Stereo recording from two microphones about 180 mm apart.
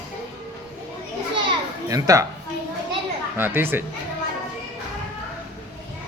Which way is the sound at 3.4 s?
10° right (ahead or behind).